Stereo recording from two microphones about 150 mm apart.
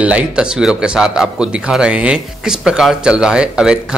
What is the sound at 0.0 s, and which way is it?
Speech, 10° right (ahead or behind).